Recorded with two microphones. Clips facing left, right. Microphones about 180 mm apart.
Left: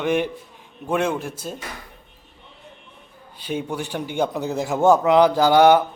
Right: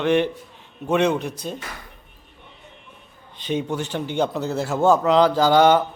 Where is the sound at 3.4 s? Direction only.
10° left (ahead or behind).